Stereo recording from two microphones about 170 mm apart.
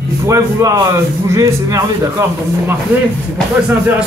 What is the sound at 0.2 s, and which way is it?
A man's voice, 20° right (ahead or behind).